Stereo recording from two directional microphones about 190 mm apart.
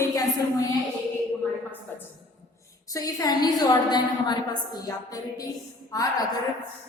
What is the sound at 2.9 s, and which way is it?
A woman's voice, 20° left (ahead or behind).